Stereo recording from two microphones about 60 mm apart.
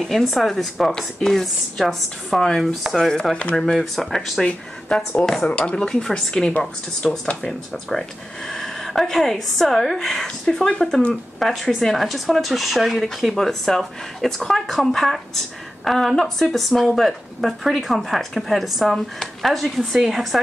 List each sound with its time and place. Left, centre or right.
0.0 s a woman's voice: centre